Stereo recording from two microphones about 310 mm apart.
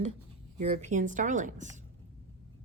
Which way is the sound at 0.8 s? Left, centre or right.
Right.